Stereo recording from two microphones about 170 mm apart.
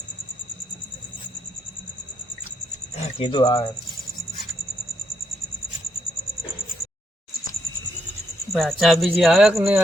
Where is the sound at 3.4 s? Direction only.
20° left (ahead or behind).